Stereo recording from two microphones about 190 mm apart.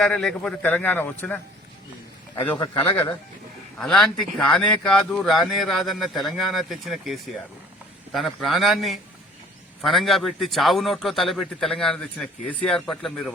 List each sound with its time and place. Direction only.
0.0 s a man's voice: 5° left (ahead or behind)
2.3 s a man's voice: 20° left (ahead or behind)
3.8 s speech: 5° left (ahead or behind)